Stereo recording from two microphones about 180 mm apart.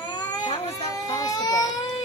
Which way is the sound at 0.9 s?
20° left (ahead or behind).